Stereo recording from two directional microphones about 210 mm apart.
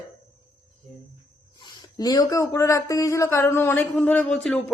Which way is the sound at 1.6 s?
20° left (ahead or behind).